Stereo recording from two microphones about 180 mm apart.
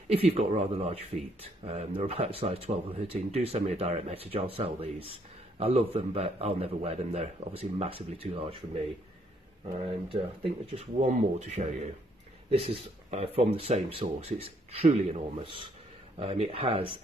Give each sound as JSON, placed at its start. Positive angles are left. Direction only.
{"t": 0.1, "sound": "speech", "side_deg": -35}
{"t": 10.1, "sound": "speech", "side_deg": -30}